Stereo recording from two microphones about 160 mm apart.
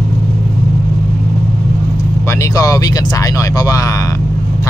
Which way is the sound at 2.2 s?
20° left (ahead or behind).